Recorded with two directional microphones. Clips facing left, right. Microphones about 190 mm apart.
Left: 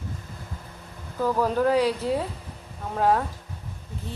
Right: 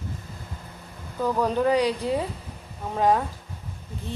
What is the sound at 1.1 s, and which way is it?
Speech, 5° left (ahead or behind).